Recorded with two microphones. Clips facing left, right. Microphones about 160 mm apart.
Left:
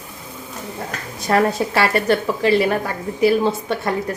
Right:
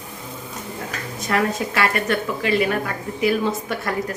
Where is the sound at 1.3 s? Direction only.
30° left (ahead or behind).